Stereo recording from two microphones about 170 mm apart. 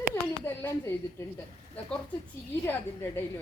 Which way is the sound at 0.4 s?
15° left (ahead or behind).